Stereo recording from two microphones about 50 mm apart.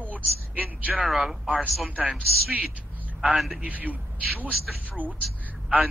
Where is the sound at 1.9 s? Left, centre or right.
Right.